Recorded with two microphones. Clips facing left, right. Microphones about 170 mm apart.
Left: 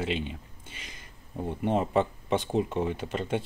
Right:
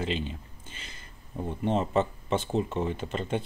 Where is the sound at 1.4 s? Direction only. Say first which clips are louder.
Left 1 dB; 10° left (ahead or behind).